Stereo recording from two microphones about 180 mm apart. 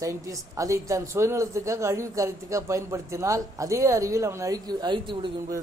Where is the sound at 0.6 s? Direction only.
15° right (ahead or behind).